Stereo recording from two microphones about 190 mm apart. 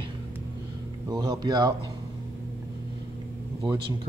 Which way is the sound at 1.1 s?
20° right (ahead or behind).